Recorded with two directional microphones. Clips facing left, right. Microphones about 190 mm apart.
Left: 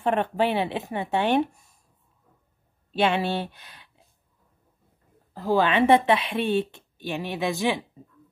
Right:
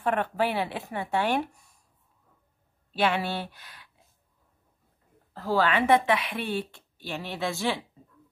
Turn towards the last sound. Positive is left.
turn(degrees=15)  # may be behind; listen again after turning